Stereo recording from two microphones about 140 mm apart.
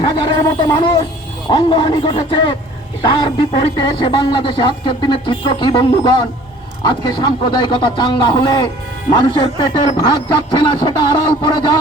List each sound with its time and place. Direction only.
0.0 s speech: 30° left (ahead or behind)